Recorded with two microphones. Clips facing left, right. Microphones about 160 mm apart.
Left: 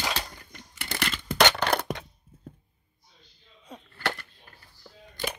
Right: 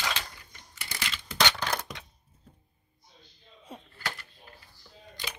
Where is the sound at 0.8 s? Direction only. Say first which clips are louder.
Left 7 dB; 60° left (ahead or behind).